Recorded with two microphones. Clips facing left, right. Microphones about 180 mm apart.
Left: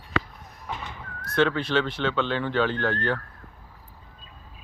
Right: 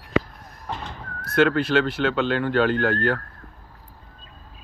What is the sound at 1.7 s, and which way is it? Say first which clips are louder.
Speech: right 4 dB; 40° right (ahead or behind).